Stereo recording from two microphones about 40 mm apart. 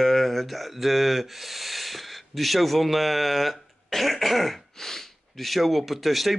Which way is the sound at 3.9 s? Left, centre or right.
Centre.